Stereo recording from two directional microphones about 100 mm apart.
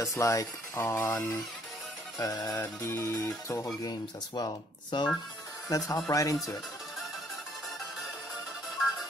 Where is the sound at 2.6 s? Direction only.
25° left (ahead or behind).